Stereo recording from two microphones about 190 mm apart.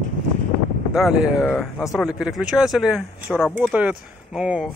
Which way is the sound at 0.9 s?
5° right (ahead or behind).